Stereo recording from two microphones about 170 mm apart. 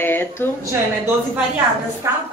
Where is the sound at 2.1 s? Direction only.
15° right (ahead or behind).